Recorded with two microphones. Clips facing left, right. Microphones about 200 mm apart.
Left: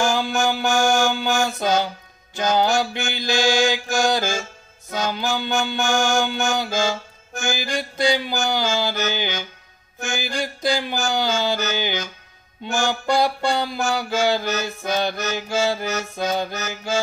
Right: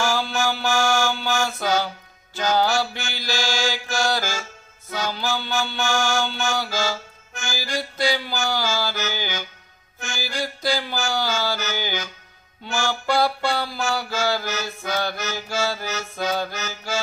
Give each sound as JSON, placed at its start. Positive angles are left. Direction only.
{"t": 0.0, "sound": "music", "side_deg": 15}
{"t": 2.3, "sound": "mantra", "side_deg": 15}